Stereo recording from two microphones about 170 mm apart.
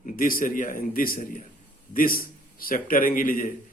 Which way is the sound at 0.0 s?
55° left (ahead or behind).